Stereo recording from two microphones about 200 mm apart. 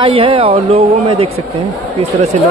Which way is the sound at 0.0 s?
25° right (ahead or behind).